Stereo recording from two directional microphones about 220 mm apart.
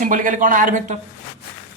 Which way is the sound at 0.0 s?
35° right (ahead or behind).